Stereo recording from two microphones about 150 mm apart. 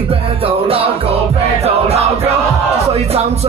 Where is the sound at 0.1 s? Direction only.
40° right (ahead or behind).